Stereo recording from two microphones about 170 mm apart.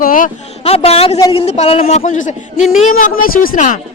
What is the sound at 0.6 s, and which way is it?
A man's voice, 35° left (ahead or behind).